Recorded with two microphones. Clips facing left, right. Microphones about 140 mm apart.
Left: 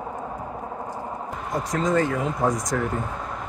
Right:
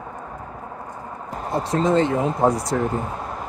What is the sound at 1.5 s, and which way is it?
Speech, 30° right (ahead or behind).